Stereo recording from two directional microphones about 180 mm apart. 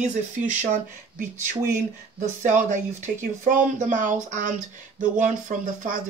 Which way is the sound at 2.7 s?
45° right (ahead or behind).